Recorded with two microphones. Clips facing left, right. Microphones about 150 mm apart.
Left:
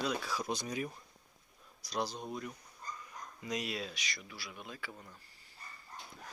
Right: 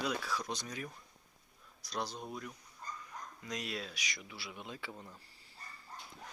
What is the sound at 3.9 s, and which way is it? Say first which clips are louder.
Speech: even; 15° right (ahead or behind).